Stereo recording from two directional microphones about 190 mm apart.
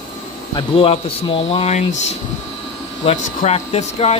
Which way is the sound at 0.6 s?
30° left (ahead or behind).